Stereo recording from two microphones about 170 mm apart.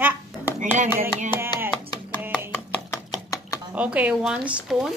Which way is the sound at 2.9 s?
20° left (ahead or behind).